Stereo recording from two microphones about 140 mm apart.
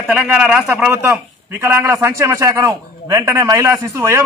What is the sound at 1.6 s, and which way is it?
A man's voice, 20° right (ahead or behind).